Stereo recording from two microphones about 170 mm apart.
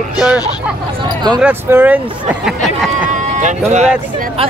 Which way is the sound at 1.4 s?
10° right (ahead or behind).